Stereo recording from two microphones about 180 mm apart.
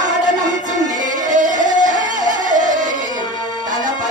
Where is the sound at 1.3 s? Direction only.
45° right (ahead or behind).